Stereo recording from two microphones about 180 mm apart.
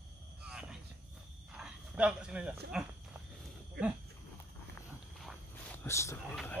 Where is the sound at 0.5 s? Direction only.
5° right (ahead or behind).